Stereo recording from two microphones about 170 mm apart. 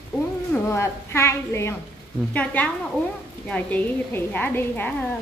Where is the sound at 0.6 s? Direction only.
15° left (ahead or behind).